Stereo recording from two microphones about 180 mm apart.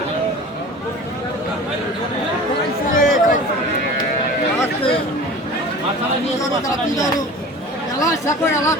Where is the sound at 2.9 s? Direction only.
50° left (ahead or behind).